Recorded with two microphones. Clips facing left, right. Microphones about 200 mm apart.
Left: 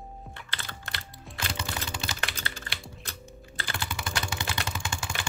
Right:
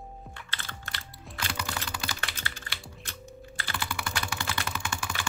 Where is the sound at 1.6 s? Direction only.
25° left (ahead or behind).